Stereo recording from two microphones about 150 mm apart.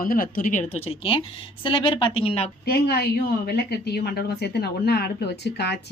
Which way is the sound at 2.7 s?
90° left.